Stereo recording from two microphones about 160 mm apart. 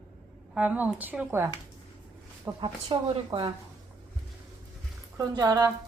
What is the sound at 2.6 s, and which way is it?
Speech, 30° right (ahead or behind).